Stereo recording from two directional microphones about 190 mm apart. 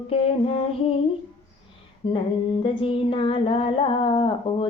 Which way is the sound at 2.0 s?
25° left (ahead or behind).